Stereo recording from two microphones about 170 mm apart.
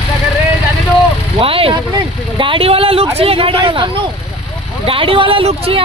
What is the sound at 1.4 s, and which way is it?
Speech, 35° right (ahead or behind).